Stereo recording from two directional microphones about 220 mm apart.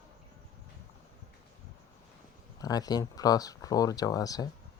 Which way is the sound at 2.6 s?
15° left (ahead or behind).